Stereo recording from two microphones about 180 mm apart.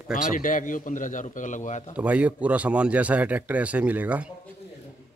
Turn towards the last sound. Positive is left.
turn(degrees=-10)  # may be behind; listen again after turning